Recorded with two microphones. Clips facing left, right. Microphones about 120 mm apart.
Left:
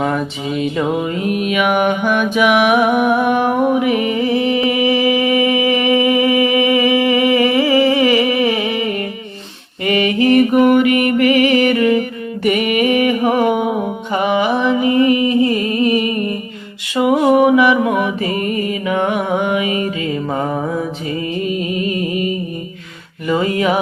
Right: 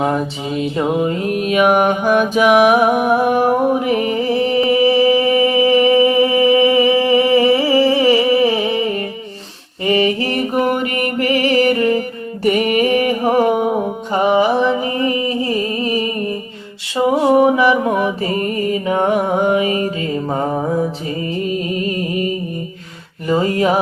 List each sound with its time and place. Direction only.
0.0 s mantra: 35° right (ahead or behind)
21.4 s music: 35° right (ahead or behind)